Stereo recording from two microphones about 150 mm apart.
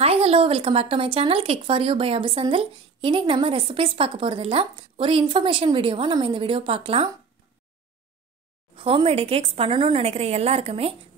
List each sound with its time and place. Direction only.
0.0 s speech: 40° right (ahead or behind)
8.7 s speech: 35° right (ahead or behind)